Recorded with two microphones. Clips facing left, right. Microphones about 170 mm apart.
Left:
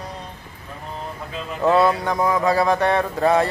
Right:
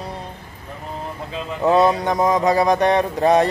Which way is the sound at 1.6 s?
20° right (ahead or behind).